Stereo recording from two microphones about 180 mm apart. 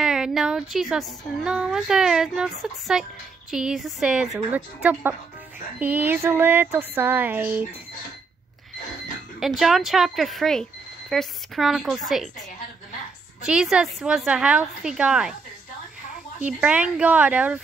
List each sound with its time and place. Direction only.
0.0 s a sound: 5° right (ahead or behind)
1.4 s speech: 5° right (ahead or behind)
9.4 s speech: centre (ahead or behind)
13.4 s speech: 5° right (ahead or behind)
16.3 s speech: 10° right (ahead or behind)